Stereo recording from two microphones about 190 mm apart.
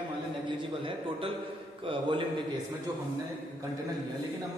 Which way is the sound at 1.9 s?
25° right (ahead or behind).